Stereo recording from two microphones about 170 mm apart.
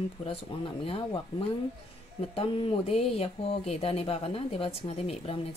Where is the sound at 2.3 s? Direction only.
35° left (ahead or behind).